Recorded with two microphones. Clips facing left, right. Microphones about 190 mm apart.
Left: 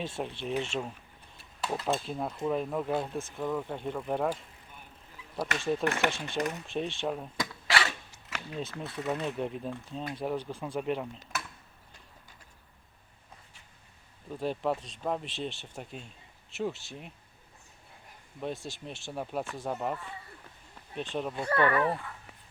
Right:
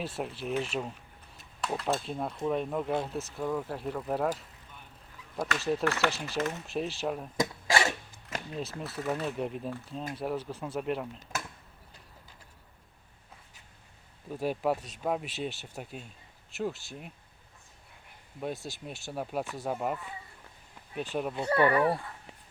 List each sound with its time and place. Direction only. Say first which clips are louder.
0.0 s speech: even; 5° right (ahead or behind)
5.5 s speech: even; 5° right (ahead or behind)
7.3 s a sound: right 3 dB; 25° right (ahead or behind)
8.8 s speech: even; centre (ahead or behind)
14.3 s speech: right 1 dB; 10° right (ahead or behind)
18.3 s speech: even; 5° right (ahead or behind)
21.3 s speech: right 2 dB; 20° right (ahead or behind)